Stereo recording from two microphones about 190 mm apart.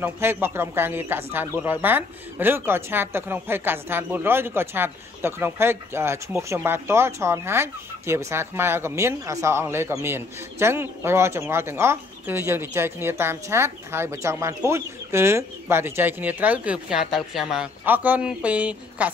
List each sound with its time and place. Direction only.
0.0 s speech: 10° right (ahead or behind)